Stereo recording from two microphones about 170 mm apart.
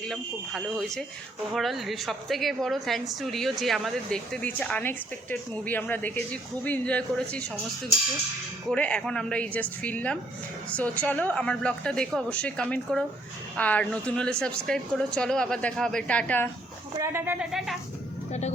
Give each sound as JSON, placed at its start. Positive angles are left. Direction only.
{"t": 0.1, "sound": "a woman's voice", "side_deg": 0}
{"t": 8.7, "sound": "a woman's voice", "side_deg": 5}
{"t": 17.0, "sound": "speech", "side_deg": -15}
{"t": 18.3, "sound": "vehicle", "side_deg": 40}